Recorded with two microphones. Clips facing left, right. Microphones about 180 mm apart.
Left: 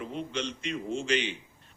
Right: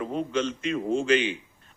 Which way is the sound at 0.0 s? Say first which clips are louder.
Right 7 dB; 45° right (ahead or behind).